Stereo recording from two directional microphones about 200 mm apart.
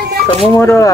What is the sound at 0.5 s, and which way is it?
Speech, 10° left (ahead or behind).